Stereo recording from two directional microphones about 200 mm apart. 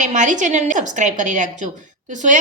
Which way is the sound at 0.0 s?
40° right (ahead or behind).